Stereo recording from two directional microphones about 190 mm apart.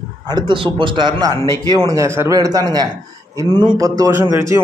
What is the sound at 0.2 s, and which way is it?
A man's voice, 20° right (ahead or behind).